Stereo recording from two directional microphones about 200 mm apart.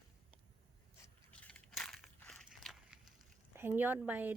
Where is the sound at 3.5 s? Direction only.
10° right (ahead or behind).